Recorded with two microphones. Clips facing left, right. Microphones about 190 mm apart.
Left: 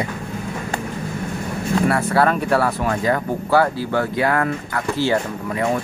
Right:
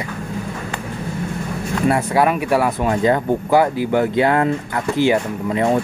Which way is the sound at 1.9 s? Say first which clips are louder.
Right 4 dB; 15° right (ahead or behind).